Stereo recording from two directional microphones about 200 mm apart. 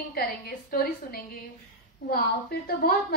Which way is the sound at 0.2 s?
50° left (ahead or behind).